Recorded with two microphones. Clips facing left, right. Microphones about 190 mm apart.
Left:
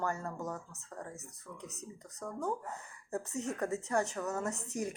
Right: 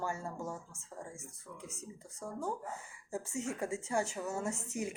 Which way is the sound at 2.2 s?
10° right (ahead or behind).